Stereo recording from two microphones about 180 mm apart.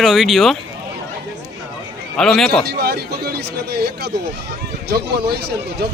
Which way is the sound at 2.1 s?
5° left (ahead or behind).